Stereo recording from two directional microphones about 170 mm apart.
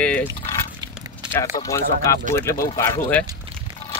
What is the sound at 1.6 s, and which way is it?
Speech, 20° left (ahead or behind).